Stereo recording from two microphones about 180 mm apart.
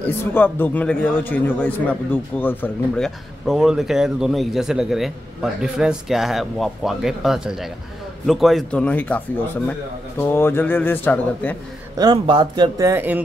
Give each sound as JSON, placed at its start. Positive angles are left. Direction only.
{"t": 0.0, "sound": "a man's voice", "side_deg": 10}
{"t": 3.4, "sound": "a man's voice", "side_deg": 0}
{"t": 12.0, "sound": "speech", "side_deg": -25}